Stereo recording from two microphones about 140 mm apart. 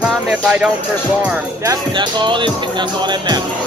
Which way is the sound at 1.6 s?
30° right (ahead or behind).